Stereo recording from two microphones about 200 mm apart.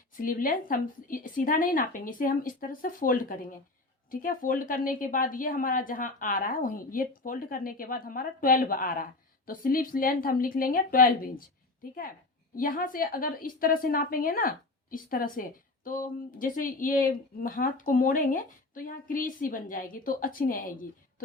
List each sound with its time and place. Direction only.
0.2 s a woman's voice: 45° left (ahead or behind)